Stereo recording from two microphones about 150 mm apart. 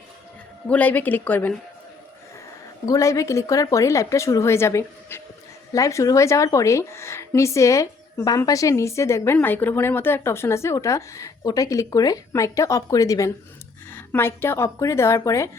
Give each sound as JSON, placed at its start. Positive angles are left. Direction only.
{"t": 0.7, "sound": "speech", "side_deg": 10}
{"t": 2.8, "sound": "a woman's voice", "side_deg": 20}